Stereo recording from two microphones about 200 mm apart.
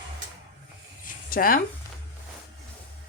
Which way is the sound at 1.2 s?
45° left (ahead or behind).